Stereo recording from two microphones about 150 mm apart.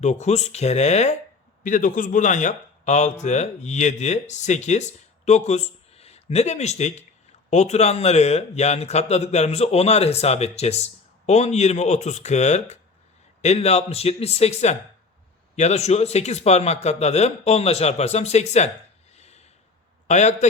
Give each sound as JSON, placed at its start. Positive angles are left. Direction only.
{"t": 0.0, "sound": "speech", "side_deg": 50}
{"t": 1.6, "sound": "speech", "side_deg": 60}
{"t": 19.1, "sound": "a sound", "side_deg": 45}
{"t": 20.1, "sound": "speech", "side_deg": 50}